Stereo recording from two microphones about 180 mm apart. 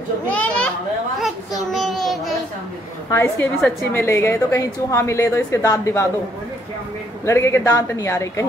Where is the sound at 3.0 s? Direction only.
15° left (ahead or behind).